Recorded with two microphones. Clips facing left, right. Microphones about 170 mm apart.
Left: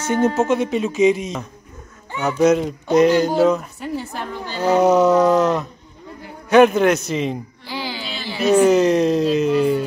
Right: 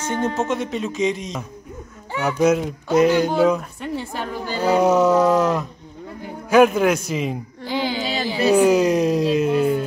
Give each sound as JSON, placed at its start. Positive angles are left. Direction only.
{"t": 0.0, "sound": "music", "side_deg": 5}
{"t": 2.1, "sound": "speech", "side_deg": -10}
{"t": 3.5, "sound": "music", "side_deg": 0}
{"t": 4.5, "sound": "speech", "side_deg": -10}
{"t": 6.5, "sound": "music", "side_deg": -5}
{"t": 7.6, "sound": "a sound", "side_deg": -20}
{"t": 8.0, "sound": "a sound", "side_deg": -45}
{"t": 8.5, "sound": "speech", "side_deg": -10}